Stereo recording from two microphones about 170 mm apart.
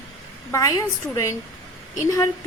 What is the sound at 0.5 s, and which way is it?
A woman's voice, 20° left (ahead or behind).